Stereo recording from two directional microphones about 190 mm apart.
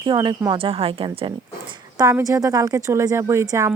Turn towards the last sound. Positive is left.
turn(degrees=-15)  # may be behind; listen again after turning